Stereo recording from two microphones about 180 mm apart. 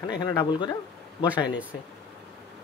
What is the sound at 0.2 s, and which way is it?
Speech, 20° left (ahead or behind).